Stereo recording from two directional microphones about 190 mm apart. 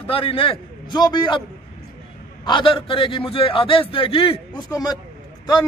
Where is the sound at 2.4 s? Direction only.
25° left (ahead or behind).